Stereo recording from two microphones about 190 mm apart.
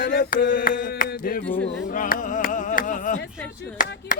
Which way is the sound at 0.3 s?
45° left (ahead or behind).